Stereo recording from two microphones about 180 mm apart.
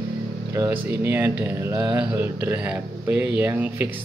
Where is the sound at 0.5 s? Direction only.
10° right (ahead or behind).